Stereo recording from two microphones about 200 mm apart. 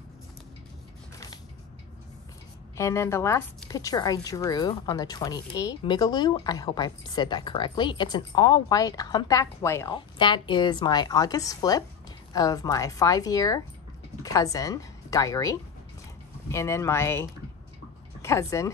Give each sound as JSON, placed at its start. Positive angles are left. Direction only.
{"t": 2.8, "sound": "speech", "side_deg": 15}
{"t": 9.9, "sound": "a woman's voice", "side_deg": 25}
{"t": 16.5, "sound": "a woman's voice", "side_deg": 15}